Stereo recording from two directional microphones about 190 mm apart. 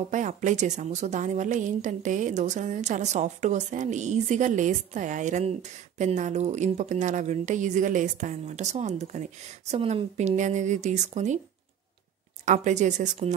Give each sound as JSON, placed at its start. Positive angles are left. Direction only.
{"t": 0.1, "sound": "a woman's voice", "side_deg": -40}
{"t": 12.4, "sound": "a woman's voice", "side_deg": -40}